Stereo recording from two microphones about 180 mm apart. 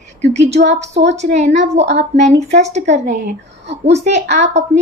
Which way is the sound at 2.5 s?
40° right (ahead or behind).